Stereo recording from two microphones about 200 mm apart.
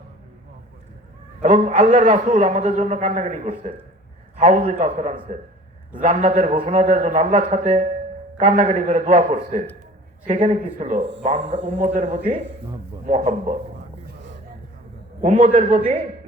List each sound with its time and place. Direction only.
1.4 s a man's voice: 40° right (ahead or behind)
5.3 s a man's voice: 40° right (ahead or behind)
15.2 s a man's voice: 35° right (ahead or behind)